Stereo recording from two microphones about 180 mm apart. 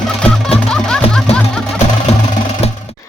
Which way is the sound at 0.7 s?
5° left (ahead or behind).